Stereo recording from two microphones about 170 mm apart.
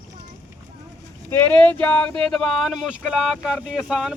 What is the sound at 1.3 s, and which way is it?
Speech, 10° left (ahead or behind).